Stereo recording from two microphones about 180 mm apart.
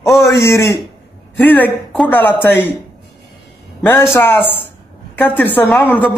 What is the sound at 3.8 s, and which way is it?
A man's voice, 10° left (ahead or behind).